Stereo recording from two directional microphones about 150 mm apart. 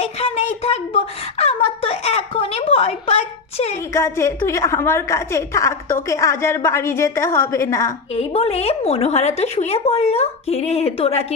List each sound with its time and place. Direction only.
0.0 s a sound: 40° left (ahead or behind)
3.9 s a woman's voice: 20° left (ahead or behind)
8.1 s a woman's voice: 40° left (ahead or behind)